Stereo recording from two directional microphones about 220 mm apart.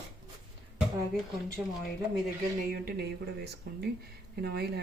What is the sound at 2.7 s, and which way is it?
Speech, 45° right (ahead or behind).